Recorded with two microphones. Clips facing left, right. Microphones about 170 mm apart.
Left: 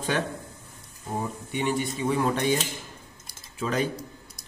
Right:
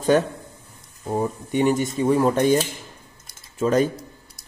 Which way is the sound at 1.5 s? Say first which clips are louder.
Right 7 dB; 45° right (ahead or behind).